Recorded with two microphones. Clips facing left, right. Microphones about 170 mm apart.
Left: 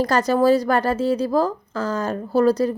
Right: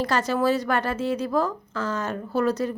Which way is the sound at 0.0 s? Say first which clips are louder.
Left 5 dB; 40° left (ahead or behind).